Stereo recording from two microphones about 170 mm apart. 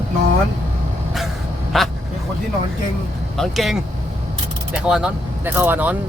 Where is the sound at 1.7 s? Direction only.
Centre (ahead or behind).